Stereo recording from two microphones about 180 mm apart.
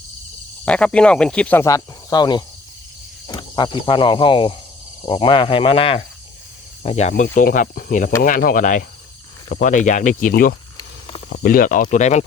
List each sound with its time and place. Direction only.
0.6 s speech: 5° left (ahead or behind); by 6.1 s 30° left (ahead or behind)
6.8 s cricket: 35° left (ahead or behind)
7.3 s speech: 50° left (ahead or behind)
10.8 s snake: 30° left (ahead or behind)
11.3 s speech: 50° left (ahead or behind)